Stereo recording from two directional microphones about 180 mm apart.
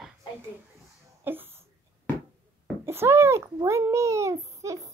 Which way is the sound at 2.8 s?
15° right (ahead or behind).